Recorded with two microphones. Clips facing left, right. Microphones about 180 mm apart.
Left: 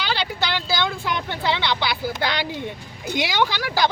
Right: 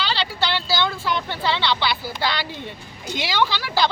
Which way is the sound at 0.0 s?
15° left (ahead or behind).